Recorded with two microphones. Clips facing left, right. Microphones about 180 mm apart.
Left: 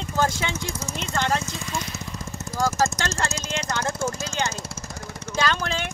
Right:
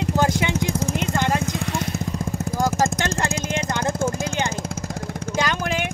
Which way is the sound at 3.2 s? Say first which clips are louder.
Right 5 dB; 55° right (ahead or behind).